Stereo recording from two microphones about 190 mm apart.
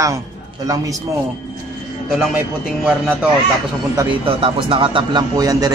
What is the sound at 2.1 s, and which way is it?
Speech, 5° right (ahead or behind).